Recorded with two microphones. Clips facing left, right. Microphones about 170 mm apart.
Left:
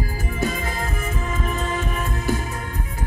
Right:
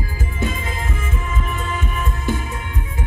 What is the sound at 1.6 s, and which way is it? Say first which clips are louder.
Music: even; 40° left (ahead or behind).